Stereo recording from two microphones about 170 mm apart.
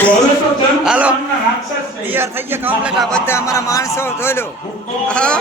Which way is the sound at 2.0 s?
15° right (ahead or behind).